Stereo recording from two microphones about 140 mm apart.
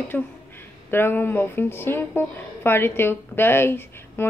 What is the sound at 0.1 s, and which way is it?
Speech, 10° left (ahead or behind).